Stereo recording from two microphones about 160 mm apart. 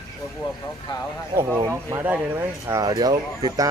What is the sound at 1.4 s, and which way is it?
Speech, 15° right (ahead or behind).